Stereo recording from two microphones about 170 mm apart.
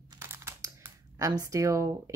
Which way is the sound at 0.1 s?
15° right (ahead or behind).